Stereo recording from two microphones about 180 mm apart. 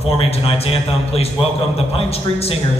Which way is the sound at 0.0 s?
35° left (ahead or behind).